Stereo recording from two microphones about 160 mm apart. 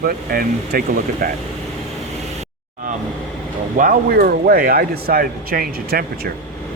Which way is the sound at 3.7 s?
60° right (ahead or behind).